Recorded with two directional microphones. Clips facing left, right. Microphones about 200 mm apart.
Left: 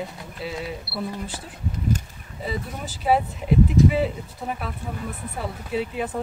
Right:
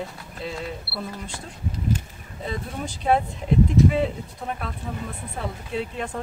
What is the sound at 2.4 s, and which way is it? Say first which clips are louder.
Speech: even; 5° left (ahead or behind).